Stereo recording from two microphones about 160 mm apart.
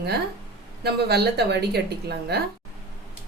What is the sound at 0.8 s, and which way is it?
A woman's voice, 90° right.